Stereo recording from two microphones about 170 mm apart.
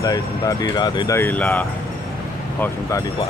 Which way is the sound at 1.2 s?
10° left (ahead or behind).